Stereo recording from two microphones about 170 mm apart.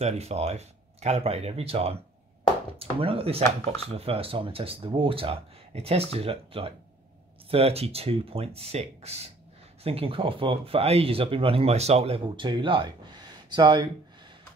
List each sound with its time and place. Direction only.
0.0 s speech: 40° right (ahead or behind)